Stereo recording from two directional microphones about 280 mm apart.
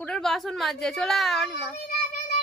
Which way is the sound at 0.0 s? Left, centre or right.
Centre.